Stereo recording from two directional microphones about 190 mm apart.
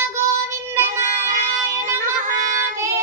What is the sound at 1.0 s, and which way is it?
Child singing, 40° right (ahead or behind).